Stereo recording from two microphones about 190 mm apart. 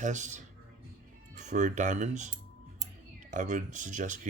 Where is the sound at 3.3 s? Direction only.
40° right (ahead or behind).